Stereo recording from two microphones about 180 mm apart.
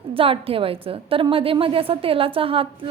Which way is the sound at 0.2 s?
30° right (ahead or behind).